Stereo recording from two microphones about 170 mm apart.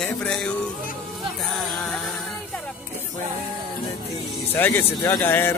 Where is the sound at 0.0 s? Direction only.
5° left (ahead or behind).